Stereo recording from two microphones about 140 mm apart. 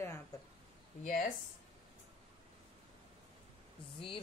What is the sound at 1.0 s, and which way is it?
Speech, 90° left.